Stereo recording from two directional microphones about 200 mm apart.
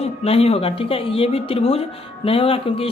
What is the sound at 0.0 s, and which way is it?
Speech, 30° left (ahead or behind).